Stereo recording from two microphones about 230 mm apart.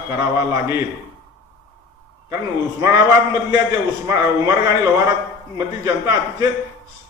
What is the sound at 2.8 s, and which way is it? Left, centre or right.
A man's voice, centre.